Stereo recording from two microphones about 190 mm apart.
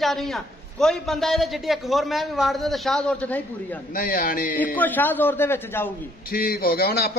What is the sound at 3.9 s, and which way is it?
Speech, 45° left (ahead or behind).